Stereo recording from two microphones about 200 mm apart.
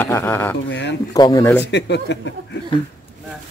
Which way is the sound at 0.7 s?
60° left (ahead or behind).